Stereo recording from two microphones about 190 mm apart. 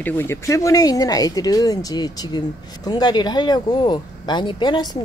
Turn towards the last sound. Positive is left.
turn(degrees=20)  # may be behind; listen again after turning